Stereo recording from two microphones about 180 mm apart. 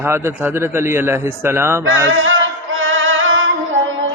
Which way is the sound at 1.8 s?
90° right.